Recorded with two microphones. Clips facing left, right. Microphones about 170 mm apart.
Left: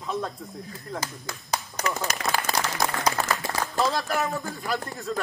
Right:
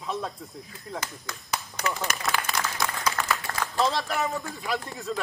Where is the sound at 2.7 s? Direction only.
35° left (ahead or behind).